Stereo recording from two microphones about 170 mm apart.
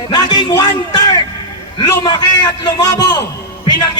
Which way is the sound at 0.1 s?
25° left (ahead or behind).